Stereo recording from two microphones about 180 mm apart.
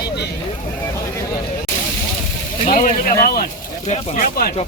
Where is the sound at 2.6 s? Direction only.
40° left (ahead or behind).